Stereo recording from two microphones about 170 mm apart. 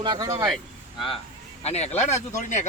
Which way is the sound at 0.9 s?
30° left (ahead or behind).